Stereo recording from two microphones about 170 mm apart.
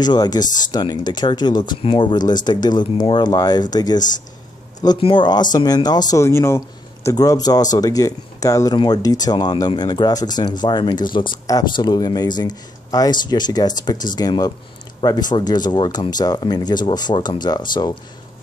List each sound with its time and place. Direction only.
0.0 s speech: 25° left (ahead or behind)